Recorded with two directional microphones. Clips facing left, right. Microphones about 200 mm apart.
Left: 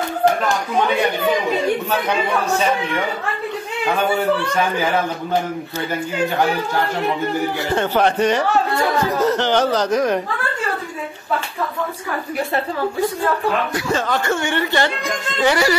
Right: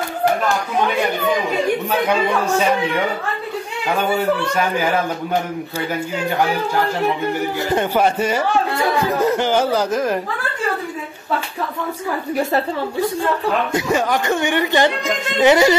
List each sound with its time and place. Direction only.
7.7 s speech: 10° right (ahead or behind)
13.7 s speech: 15° right (ahead or behind)
15.3 s music: 20° right (ahead or behind)